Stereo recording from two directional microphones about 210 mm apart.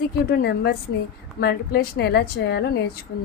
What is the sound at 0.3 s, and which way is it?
Speech, 45° left (ahead or behind).